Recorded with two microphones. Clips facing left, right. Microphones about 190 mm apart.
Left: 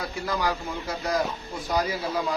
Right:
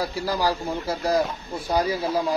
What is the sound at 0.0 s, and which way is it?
A man's voice, 35° right (ahead or behind).